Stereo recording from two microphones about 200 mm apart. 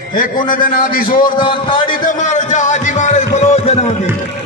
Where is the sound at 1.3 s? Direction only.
25° left (ahead or behind).